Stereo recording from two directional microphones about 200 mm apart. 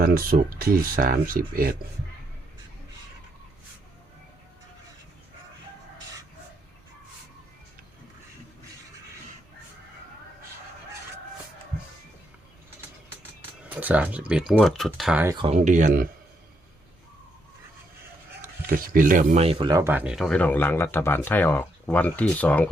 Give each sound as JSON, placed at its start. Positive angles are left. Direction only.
{"t": 0.0, "sound": "speech", "side_deg": -45}
{"t": 13.7, "sound": "speech", "side_deg": -10}
{"t": 15.4, "sound": "speech", "side_deg": -35}
{"t": 18.4, "sound": "speech", "side_deg": -45}